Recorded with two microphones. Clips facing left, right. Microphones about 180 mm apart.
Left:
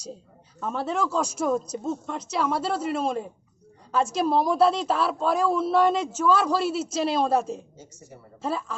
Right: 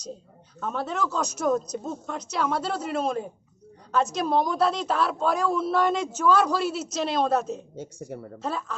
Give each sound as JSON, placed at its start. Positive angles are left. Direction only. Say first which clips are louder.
{"t": 0.6, "sound": "a woman's voice", "louder": "left 2 dB", "side_deg": 0}
{"t": 7.8, "sound": "speech", "louder": "right 10 dB", "side_deg": -60}
{"t": 8.4, "sound": "a woman's voice", "louder": "left 3 dB", "side_deg": 5}